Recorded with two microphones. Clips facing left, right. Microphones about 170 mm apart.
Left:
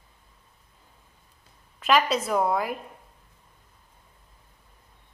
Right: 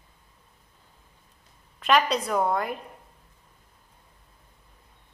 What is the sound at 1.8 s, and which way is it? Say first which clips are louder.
Speech: even; centre (ahead or behind).